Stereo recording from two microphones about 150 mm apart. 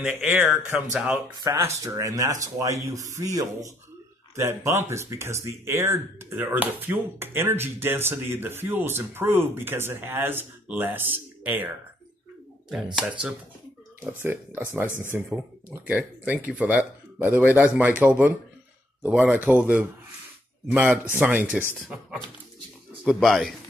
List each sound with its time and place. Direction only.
0.0 s speech: 10° right (ahead or behind)
1.4 s speech: 20° right (ahead or behind)
14.0 s speech: 15° right (ahead or behind)
23.2 s speech: centre (ahead or behind)